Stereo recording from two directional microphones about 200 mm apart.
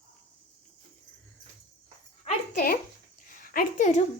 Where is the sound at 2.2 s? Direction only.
45° left (ahead or behind).